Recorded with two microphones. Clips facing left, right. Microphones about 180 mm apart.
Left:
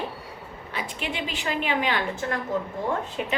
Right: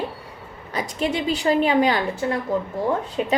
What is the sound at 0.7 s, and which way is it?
A woman's voice, 40° right (ahead or behind).